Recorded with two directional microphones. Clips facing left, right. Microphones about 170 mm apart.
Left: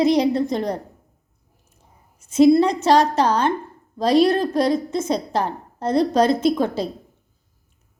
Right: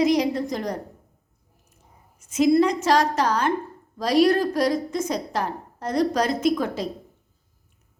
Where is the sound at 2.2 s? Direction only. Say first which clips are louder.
Left 4 dB; 30° left (ahead or behind).